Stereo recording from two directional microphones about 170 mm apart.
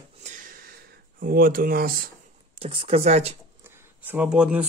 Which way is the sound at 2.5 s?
35° right (ahead or behind).